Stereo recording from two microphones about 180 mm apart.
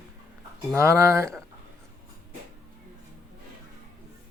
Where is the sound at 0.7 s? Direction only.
15° right (ahead or behind).